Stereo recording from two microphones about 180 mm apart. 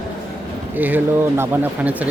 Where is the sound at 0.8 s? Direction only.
10° right (ahead or behind).